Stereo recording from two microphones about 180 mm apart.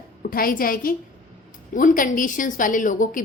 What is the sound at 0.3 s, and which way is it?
A woman's voice, 55° left (ahead or behind).